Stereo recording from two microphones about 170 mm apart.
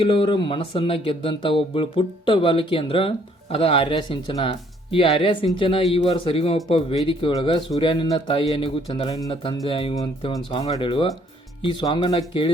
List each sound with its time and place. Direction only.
0.0 s speech: 30° left (ahead or behind)